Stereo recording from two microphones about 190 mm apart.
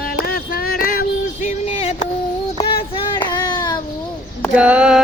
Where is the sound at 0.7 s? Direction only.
50° left (ahead or behind).